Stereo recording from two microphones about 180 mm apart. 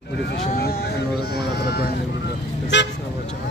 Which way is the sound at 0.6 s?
60° left (ahead or behind).